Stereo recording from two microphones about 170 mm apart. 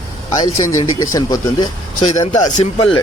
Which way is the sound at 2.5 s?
40° left (ahead or behind).